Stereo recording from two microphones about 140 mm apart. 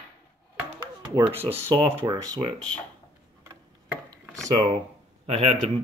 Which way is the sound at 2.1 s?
30° right (ahead or behind).